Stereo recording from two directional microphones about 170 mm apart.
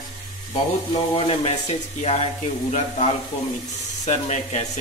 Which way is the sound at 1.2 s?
35° left (ahead or behind).